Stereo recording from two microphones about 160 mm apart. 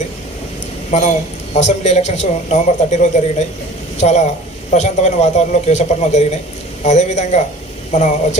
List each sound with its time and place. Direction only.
0.9 s a man's voice: 45° left (ahead or behind)